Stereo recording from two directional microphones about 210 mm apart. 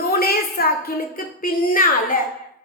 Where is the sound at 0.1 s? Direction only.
45° left (ahead or behind).